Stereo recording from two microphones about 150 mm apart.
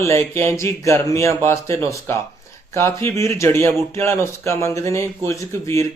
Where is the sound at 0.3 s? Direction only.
15° left (ahead or behind).